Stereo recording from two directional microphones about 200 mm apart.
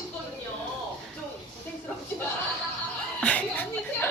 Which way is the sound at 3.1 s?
5° left (ahead or behind).